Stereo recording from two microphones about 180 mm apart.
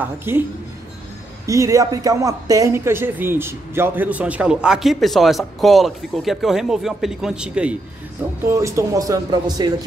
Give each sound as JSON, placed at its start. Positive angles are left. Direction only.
{"t": 0.0, "sound": "speech", "side_deg": -10}
{"t": 1.4, "sound": "speech", "side_deg": -15}
{"t": 8.5, "sound": "speech", "side_deg": -15}